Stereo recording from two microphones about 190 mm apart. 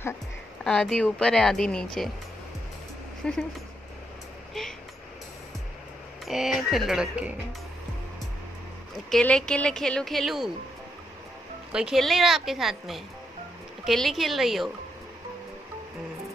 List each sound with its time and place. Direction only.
0.7 s speech: 5° left (ahead or behind)
3.2 s speech: 5° left (ahead or behind)
4.6 s a sound: centre (ahead or behind)
6.2 s speech: centre (ahead or behind)
9.1 s speech: 5° left (ahead or behind)
11.7 s speech: 5° right (ahead or behind)